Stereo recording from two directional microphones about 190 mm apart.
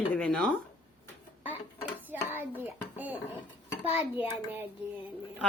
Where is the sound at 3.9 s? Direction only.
10° right (ahead or behind).